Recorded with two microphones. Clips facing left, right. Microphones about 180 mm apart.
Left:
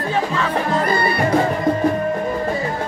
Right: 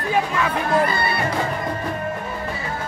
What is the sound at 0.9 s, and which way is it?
Music, 40° left (ahead or behind).